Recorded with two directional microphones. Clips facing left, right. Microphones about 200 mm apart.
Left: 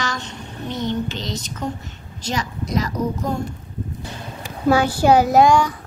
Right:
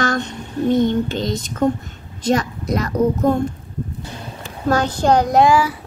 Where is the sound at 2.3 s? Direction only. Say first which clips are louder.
Right 7 dB; 55° right (ahead or behind).